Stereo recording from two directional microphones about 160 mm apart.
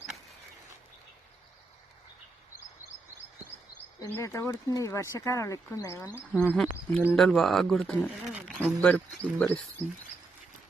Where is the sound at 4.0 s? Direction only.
20° left (ahead or behind).